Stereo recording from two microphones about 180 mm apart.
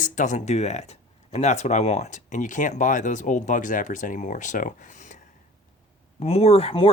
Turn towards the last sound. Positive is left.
turn(degrees=35)  # may be behind; listen again after turning